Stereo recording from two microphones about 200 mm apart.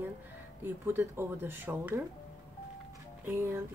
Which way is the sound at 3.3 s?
10° right (ahead or behind).